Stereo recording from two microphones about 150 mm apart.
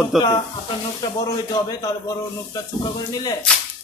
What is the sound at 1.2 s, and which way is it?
Speech, 25° left (ahead or behind).